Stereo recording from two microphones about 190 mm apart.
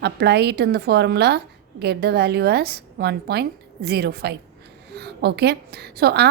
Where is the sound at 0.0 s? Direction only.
60° right (ahead or behind).